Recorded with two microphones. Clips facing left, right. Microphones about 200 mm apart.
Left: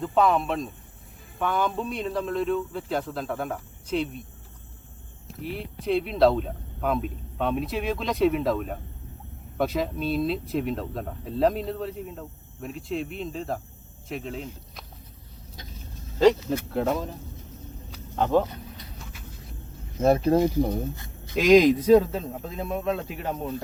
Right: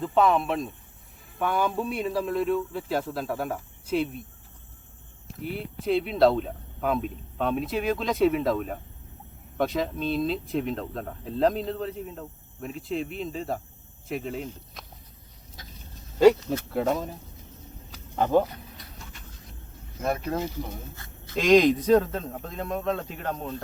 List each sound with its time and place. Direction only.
0.0 s speech: centre (ahead or behind)
5.3 s speech: centre (ahead or behind)
16.7 s speech: centre (ahead or behind)
17.9 s a sound: 5° right (ahead or behind)
20.0 s speech: 30° left (ahead or behind)
20.9 s a sound: 20° left (ahead or behind)
21.4 s speech: 5° left (ahead or behind)